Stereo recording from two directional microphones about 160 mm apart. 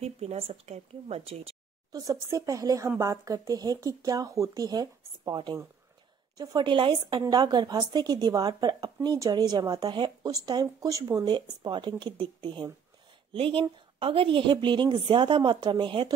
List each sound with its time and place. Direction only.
0.0 s a woman's voice: 40° right (ahead or behind)
1.9 s a woman's voice: 20° right (ahead or behind)